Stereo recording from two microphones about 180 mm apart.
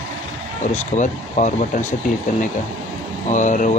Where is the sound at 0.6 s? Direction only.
45° left (ahead or behind).